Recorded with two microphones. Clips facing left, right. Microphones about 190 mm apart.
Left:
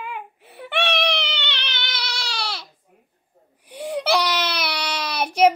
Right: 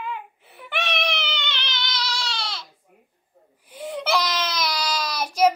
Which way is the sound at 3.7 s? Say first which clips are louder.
Left 3 dB; 70° left (ahead or behind).